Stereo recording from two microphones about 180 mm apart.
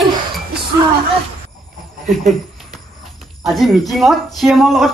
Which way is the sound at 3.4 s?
Centre (ahead or behind).